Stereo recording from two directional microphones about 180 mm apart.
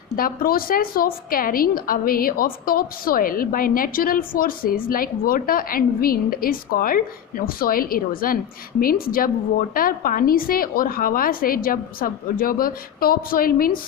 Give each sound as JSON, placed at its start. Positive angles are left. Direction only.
{"t": 0.2, "sound": "a woman's voice", "side_deg": 55}